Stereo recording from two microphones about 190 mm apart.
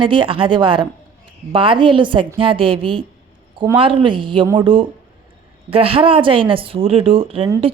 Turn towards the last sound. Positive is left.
turn(degrees=-30)  # may be behind; listen again after turning